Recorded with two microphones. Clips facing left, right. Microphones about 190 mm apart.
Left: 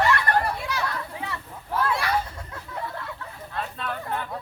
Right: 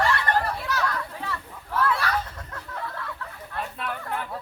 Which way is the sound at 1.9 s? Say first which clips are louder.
Left 1 dB; 10° left (ahead or behind).